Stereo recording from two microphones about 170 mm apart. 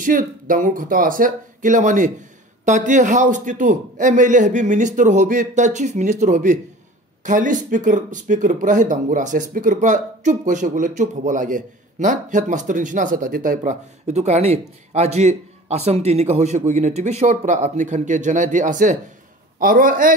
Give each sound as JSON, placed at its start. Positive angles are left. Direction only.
{"t": 0.0, "sound": "a man's voice", "side_deg": -50}